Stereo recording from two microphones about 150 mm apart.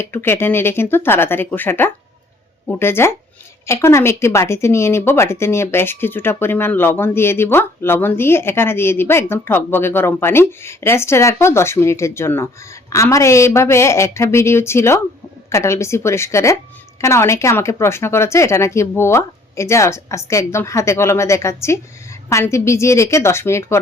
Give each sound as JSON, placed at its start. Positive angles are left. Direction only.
{"t": 0.0, "sound": "speech", "side_deg": 15}